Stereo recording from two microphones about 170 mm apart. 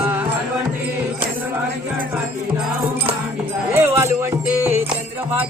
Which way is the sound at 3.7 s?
15° right (ahead or behind).